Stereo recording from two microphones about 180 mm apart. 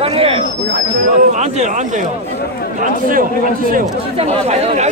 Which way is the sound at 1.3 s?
40° right (ahead or behind).